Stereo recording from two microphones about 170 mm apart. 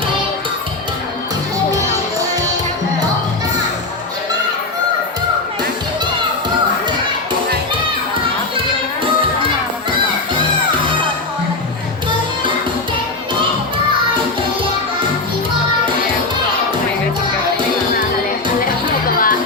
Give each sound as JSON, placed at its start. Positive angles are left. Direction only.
{"t": 18.6, "sound": "music", "side_deg": 60}